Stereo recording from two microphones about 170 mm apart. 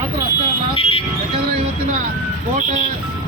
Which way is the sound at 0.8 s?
35° left (ahead or behind).